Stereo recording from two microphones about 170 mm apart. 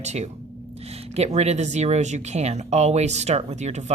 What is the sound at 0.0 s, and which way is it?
Speech, 40° right (ahead or behind).